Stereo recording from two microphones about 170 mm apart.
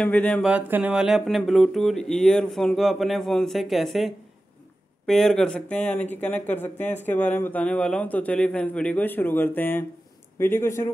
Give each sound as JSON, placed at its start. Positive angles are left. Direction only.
{"t": 0.0, "sound": "speech", "side_deg": 10}
{"t": 0.4, "sound": "speech", "side_deg": -5}